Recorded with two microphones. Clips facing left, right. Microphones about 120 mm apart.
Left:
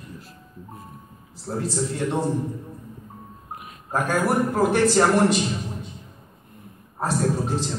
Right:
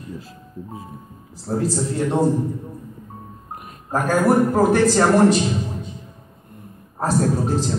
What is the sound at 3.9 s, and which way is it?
A man's voice, 40° right (ahead or behind).